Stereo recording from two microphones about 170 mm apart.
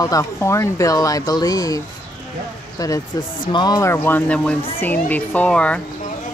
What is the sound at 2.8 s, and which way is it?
Speech, 20° left (ahead or behind).